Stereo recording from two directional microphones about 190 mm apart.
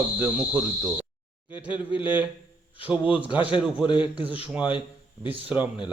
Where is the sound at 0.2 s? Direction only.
10° right (ahead or behind).